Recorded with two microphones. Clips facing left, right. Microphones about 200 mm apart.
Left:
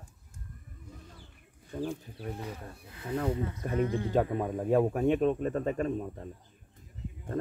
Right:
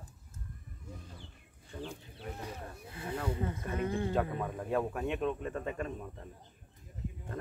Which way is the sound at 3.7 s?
35° left (ahead or behind).